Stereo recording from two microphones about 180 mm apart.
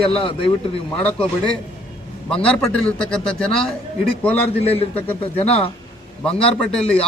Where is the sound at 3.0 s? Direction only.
5° left (ahead or behind).